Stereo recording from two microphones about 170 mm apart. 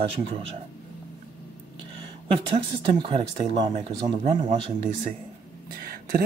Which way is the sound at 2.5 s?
30° right (ahead or behind).